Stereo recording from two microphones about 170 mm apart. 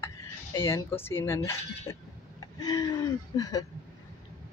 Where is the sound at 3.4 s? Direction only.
20° left (ahead or behind).